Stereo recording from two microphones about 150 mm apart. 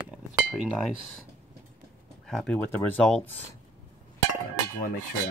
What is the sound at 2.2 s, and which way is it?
Speech, 5° left (ahead or behind).